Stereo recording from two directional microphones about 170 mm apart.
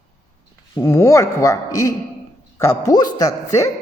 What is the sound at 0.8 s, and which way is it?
A child's voice, 15° left (ahead or behind).